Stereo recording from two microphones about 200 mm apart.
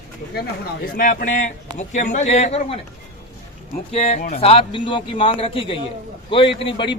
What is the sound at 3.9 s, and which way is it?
A man's voice, 35° left (ahead or behind).